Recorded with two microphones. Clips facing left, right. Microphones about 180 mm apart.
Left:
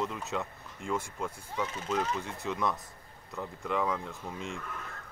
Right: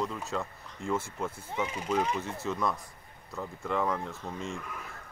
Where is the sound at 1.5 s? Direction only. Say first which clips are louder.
Right 2 dB; 10° right (ahead or behind); by 4.6 s 5° left (ahead or behind).